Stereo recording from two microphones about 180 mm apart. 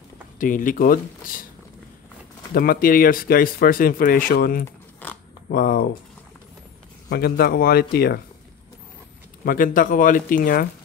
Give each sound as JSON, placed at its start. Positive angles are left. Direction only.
{"t": 0.4, "sound": "speech", "side_deg": 50}
{"t": 2.5, "sound": "speech", "side_deg": 55}
{"t": 7.1, "sound": "speech", "side_deg": 60}
{"t": 9.4, "sound": "speech", "side_deg": 50}